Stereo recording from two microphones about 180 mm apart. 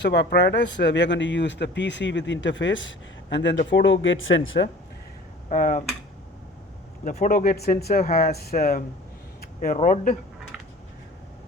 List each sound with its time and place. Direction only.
0.0 s speech: 70° left (ahead or behind); by 4.7 s 90° left
5.5 s speech: 45° left (ahead or behind)
7.0 s speech: 45° left (ahead or behind)
9.4 s a sound: 50° left (ahead or behind)
9.7 s speech: 45° left (ahead or behind)